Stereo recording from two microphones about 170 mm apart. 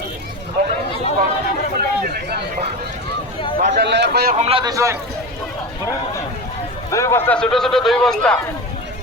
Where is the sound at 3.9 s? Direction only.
80° right.